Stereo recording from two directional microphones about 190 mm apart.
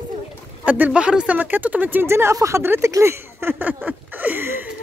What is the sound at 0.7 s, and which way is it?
Speech, 10° right (ahead or behind).